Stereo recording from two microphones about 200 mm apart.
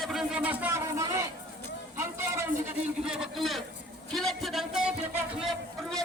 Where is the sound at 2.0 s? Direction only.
10° right (ahead or behind).